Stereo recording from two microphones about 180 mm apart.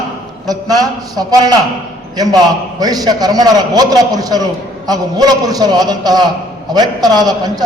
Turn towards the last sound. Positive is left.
turn(degrees=-20)  # may be behind; listen again after turning